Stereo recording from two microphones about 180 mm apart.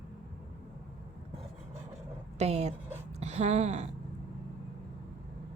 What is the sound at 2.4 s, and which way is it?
Speech, 35° right (ahead or behind).